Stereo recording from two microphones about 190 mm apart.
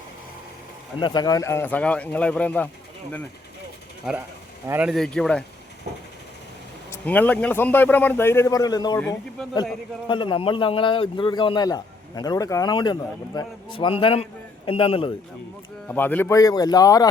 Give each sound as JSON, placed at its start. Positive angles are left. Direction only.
{"t": 0.9, "sound": "a man's voice", "side_deg": 25}
{"t": 4.1, "sound": "speech", "side_deg": 0}
{"t": 6.9, "sound": "a man's voice", "side_deg": 10}
{"t": 10.1, "sound": "a man's voice", "side_deg": 25}
{"t": 15.9, "sound": "a man's voice", "side_deg": 10}